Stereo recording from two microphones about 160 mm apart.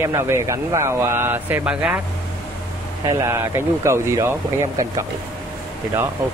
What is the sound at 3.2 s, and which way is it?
Speech, 15° right (ahead or behind).